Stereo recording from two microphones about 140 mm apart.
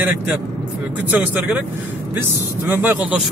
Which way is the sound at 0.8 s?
10° right (ahead or behind).